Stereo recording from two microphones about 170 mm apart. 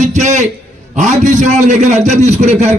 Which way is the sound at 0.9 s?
45° right (ahead or behind).